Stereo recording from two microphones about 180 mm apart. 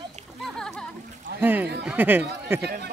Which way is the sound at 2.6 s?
65° right (ahead or behind).